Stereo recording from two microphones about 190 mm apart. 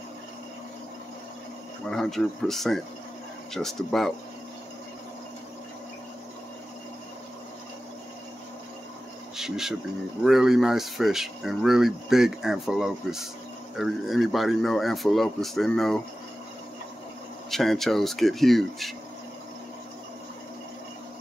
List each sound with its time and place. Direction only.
1.9 s speech: centre (ahead or behind)
9.4 s speech: centre (ahead or behind)
17.5 s speech: centre (ahead or behind)